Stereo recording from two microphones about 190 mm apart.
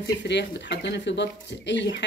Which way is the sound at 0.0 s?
65° left (ahead or behind).